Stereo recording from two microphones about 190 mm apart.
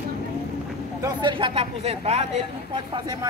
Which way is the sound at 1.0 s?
25° right (ahead or behind).